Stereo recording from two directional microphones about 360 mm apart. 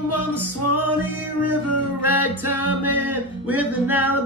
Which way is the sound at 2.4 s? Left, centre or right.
Right.